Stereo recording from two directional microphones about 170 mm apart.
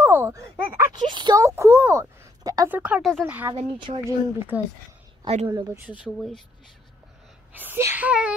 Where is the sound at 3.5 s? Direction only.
30° right (ahead or behind).